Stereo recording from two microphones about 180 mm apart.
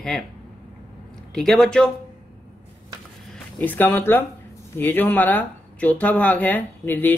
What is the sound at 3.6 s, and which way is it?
Speech, 10° left (ahead or behind).